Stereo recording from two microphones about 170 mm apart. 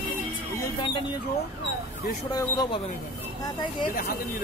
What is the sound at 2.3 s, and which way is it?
Speech, 20° left (ahead or behind).